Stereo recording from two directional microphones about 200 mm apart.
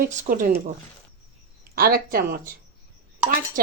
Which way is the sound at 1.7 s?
50° right (ahead or behind).